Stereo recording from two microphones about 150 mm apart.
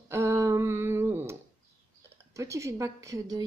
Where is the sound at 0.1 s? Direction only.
20° right (ahead or behind).